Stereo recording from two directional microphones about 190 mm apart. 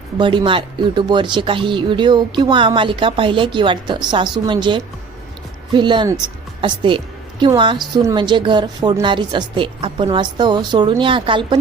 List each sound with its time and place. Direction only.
0.2 s a woman's voice: 25° right (ahead or behind)